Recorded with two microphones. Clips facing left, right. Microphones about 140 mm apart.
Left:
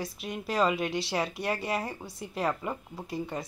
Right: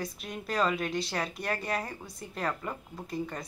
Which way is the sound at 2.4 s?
15° left (ahead or behind).